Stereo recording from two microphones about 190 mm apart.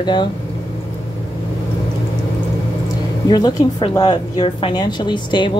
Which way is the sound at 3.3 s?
20° left (ahead or behind).